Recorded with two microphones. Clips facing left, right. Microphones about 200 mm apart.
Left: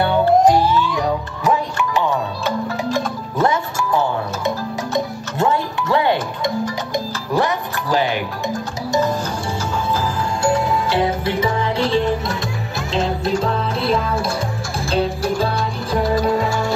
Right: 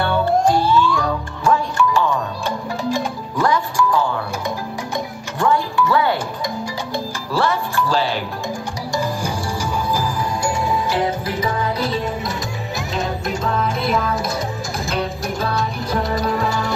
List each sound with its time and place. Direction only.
0.0 s music: 20° left (ahead or behind)
2.4 s music: 15° right (ahead or behind)
3.3 s music: 25° left (ahead or behind)
5.4 s music: 20° left (ahead or behind)
10.9 s music: 25° left (ahead or behind)